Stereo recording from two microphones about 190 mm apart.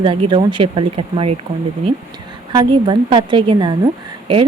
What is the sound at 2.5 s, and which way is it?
A woman's voice, 25° right (ahead or behind).